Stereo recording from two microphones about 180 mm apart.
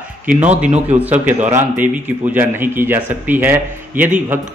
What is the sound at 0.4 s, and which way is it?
Speech, 10° right (ahead or behind).